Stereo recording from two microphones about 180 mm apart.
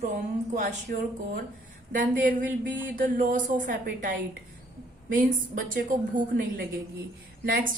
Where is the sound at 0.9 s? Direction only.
50° right (ahead or behind).